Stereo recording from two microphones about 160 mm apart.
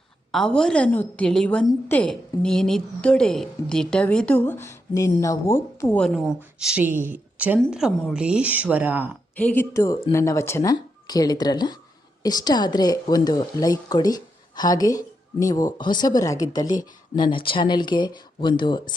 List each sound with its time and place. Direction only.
0.3 s a woman's voice: 5° left (ahead or behind)
6.0 s a woman's voice: centre (ahead or behind)
9.3 s a woman's voice: 10° left (ahead or behind); by 18.9 s 30° left (ahead or behind)